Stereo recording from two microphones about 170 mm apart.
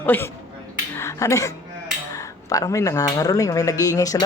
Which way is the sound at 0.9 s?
15° left (ahead or behind).